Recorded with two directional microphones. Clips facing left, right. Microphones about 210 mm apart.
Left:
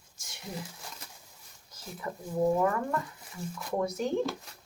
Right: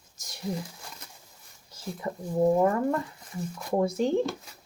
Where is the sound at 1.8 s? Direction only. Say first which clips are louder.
Right 9 dB; 30° right (ahead or behind).